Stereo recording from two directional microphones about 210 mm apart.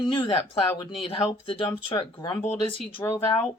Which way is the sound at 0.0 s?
25° left (ahead or behind).